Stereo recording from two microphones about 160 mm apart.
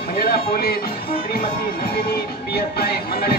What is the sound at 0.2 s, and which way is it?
Speech, 75° left (ahead or behind).